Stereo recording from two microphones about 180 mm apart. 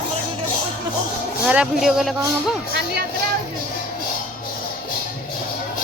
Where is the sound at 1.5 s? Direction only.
5° right (ahead or behind).